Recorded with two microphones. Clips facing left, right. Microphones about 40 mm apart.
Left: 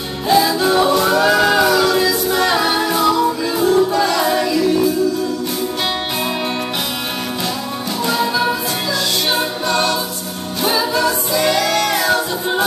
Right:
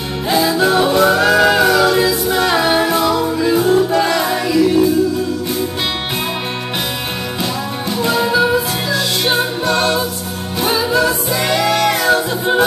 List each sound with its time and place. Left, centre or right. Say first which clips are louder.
0.3 s music: even; centre
8.0 s music: right 3 dB; centre
11.3 s music: even; right